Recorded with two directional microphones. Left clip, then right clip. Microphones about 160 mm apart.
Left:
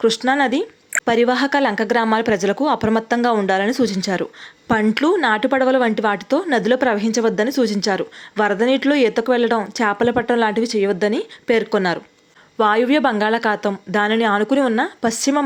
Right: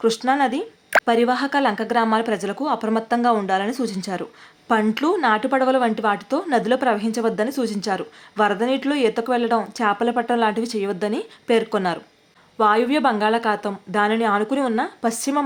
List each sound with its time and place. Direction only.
0.3 s speech: 25° left (ahead or behind)